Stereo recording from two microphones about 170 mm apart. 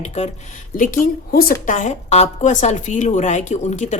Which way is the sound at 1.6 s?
45° left (ahead or behind).